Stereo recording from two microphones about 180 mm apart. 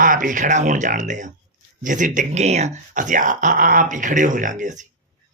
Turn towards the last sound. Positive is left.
turn(degrees=-45)  # may be behind; listen again after turning